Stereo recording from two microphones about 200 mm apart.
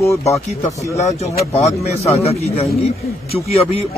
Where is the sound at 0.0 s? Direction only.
15° left (ahead or behind).